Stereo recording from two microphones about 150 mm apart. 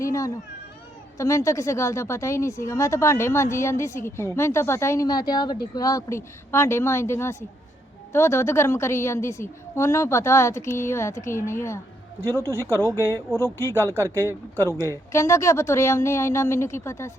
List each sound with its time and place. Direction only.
0.0 s cat: 20° left (ahead or behind)
1.2 s a woman's voice: 20° left (ahead or behind)
12.5 s speech: 15° right (ahead or behind)
15.1 s speech: 20° left (ahead or behind)